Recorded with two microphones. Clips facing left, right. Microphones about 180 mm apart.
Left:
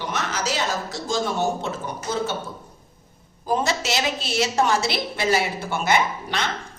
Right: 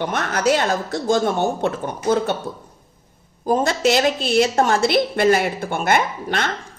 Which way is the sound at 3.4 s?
50° right (ahead or behind).